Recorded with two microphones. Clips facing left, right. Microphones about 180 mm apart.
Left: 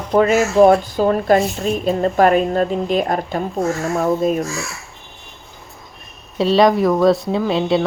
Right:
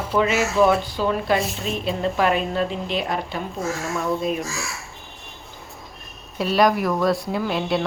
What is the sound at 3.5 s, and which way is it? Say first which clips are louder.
Speech: left 7 dB; centre (ahead or behind).